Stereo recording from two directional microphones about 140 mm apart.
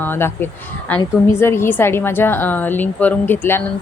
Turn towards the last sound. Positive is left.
turn(degrees=15)  # may be behind; listen again after turning